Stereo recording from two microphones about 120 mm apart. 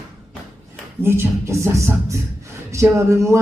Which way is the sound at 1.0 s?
20° right (ahead or behind).